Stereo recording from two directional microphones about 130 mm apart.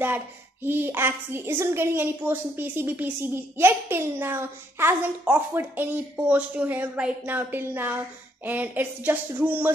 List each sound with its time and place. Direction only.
0.0 s a woman's voice: 15° right (ahead or behind)